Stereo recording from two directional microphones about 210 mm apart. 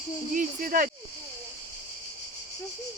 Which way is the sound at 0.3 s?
40° right (ahead or behind).